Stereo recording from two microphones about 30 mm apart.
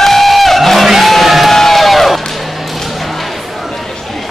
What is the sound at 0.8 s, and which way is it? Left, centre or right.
Music, centre.